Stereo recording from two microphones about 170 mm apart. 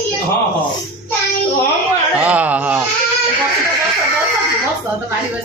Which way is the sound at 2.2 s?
10° right (ahead or behind).